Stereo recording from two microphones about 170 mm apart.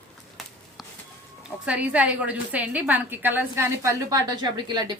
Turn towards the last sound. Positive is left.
turn(degrees=-25)  # may be behind; listen again after turning